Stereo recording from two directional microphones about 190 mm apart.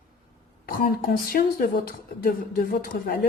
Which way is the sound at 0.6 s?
50° left (ahead or behind).